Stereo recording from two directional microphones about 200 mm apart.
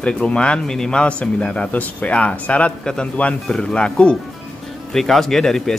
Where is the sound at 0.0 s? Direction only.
5° left (ahead or behind).